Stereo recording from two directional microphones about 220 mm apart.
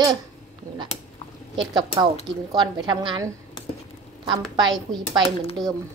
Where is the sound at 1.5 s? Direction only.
20° right (ahead or behind).